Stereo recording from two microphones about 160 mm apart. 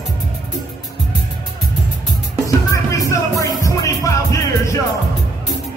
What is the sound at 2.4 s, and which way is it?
Music, 20° left (ahead or behind).